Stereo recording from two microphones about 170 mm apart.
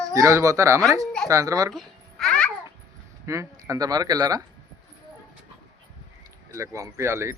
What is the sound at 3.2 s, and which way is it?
Speech, 20° right (ahead or behind).